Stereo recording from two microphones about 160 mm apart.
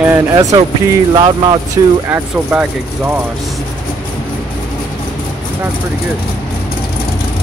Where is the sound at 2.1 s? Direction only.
10° right (ahead or behind).